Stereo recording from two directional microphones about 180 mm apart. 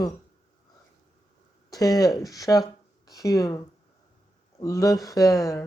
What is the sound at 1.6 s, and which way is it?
Speech, 20° left (ahead or behind).